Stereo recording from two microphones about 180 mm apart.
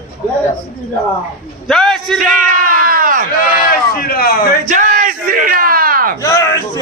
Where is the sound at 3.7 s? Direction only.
55° left (ahead or behind).